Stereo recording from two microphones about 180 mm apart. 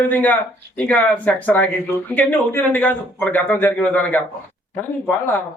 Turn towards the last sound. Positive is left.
turn(degrees=10)  # may be behind; listen again after turning